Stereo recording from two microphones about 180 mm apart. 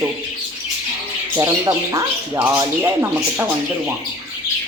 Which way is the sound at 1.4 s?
20° right (ahead or behind).